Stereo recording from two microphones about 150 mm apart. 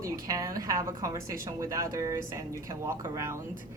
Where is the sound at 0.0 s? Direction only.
20° right (ahead or behind).